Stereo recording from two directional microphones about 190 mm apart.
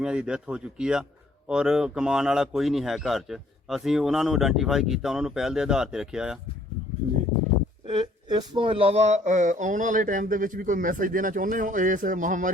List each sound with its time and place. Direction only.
0.0 s a man's voice: 5° right (ahead or behind)
7.0 s speech: 35° right (ahead or behind)